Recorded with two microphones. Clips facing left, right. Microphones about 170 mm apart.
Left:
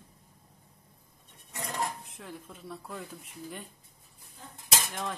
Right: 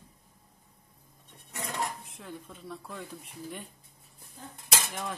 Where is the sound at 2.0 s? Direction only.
Centre (ahead or behind).